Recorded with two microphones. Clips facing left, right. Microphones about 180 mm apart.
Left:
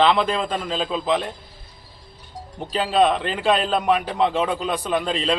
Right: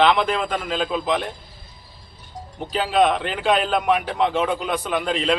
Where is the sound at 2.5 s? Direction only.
Centre (ahead or behind).